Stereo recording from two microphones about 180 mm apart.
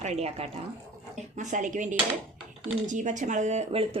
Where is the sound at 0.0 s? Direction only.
35° right (ahead or behind).